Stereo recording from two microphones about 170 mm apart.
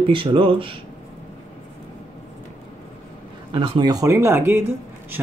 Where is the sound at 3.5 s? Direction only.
25° right (ahead or behind).